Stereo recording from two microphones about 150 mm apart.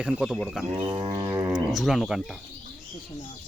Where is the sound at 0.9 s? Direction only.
30° right (ahead or behind).